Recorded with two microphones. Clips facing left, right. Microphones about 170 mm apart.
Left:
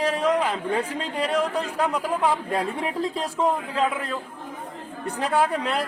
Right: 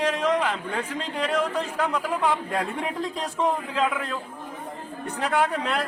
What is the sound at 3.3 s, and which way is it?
Speech, 35° left (ahead or behind).